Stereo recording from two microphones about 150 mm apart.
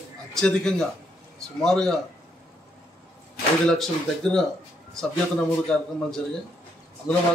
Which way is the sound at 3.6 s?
5° left (ahead or behind).